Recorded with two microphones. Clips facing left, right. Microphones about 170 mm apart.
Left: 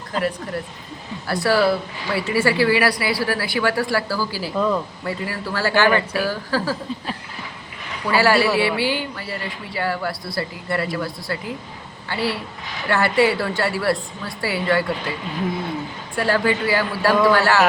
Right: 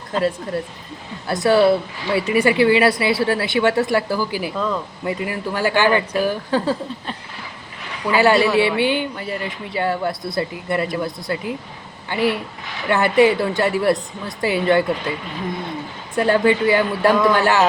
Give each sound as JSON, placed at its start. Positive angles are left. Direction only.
{"t": 0.2, "sound": "speech", "side_deg": -25}
{"t": 4.5, "sound": "speech", "side_deg": 10}
{"t": 5.0, "sound": "speech", "side_deg": -20}
{"t": 8.1, "sound": "speech", "side_deg": -20}
{"t": 16.1, "sound": "speech", "side_deg": -20}